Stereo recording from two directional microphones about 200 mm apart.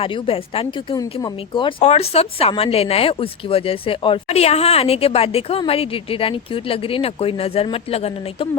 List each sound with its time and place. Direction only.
0.0 s speech: 25° left (ahead or behind)